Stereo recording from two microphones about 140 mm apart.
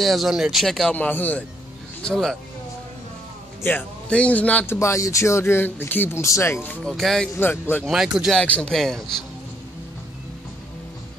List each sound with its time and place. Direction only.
0.0 s speech: centre (ahead or behind)
3.6 s speech: 10° left (ahead or behind)
4.7 s speech: 20° left (ahead or behind); by 7.2 s 5° left (ahead or behind)
7.3 s speech: 15° left (ahead or behind)
7.8 s speech: 5° right (ahead or behind)
8.4 s speech: 10° left (ahead or behind)